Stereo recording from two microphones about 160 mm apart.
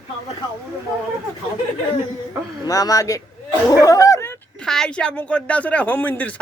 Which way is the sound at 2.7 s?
20° left (ahead or behind).